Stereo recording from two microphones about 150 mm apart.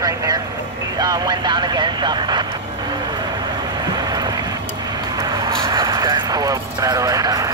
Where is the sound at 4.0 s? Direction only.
25° right (ahead or behind).